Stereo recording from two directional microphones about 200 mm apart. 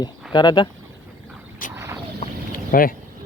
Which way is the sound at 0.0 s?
20° left (ahead or behind).